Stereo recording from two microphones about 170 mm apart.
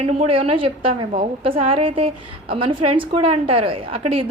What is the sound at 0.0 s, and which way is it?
A woman's voice, 35° right (ahead or behind).